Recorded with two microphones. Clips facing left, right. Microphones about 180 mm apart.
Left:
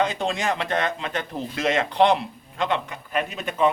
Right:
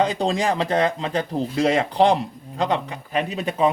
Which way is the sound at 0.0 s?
35° right (ahead or behind).